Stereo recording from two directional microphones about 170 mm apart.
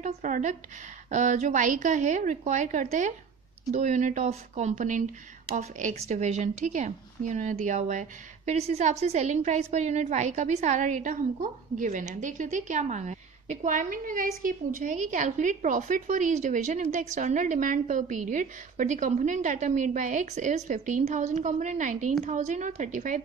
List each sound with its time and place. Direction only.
0.0 s a woman's voice: 45° right (ahead or behind)